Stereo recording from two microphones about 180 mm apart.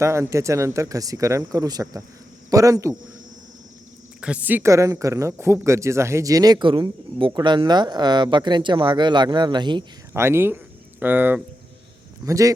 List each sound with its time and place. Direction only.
0.0 s speech: 15° right (ahead or behind)
4.2 s speech: 10° right (ahead or behind); by 9.8 s 25° right (ahead or behind)
10.2 s speech: 15° right (ahead or behind)